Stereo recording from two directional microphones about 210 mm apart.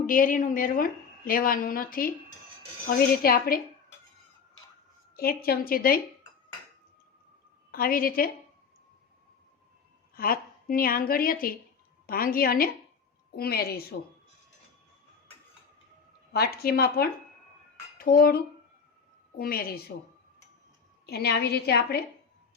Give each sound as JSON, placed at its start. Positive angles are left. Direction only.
{"t": 0.0, "sound": "a woman's voice", "side_deg": 40}
{"t": 5.1, "sound": "a woman's voice", "side_deg": 45}
{"t": 7.7, "sound": "a woman's voice", "side_deg": 45}
{"t": 10.2, "sound": "a woman's voice", "side_deg": 45}
{"t": 16.3, "sound": "a woman's voice", "side_deg": 45}
{"t": 17.9, "sound": "cutlery", "side_deg": 45}
{"t": 19.4, "sound": "a woman's voice", "side_deg": 45}
{"t": 21.1, "sound": "a woman's voice", "side_deg": 50}